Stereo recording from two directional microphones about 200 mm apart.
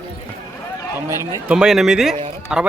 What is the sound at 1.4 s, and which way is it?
Speech, 5° right (ahead or behind).